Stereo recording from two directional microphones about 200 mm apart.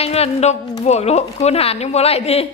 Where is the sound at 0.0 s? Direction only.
30° left (ahead or behind).